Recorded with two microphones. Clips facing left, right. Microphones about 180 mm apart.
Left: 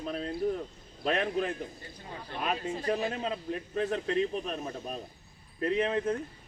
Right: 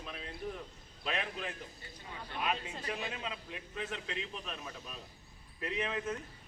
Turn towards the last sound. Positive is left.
turn(degrees=35)  # may be behind; listen again after turning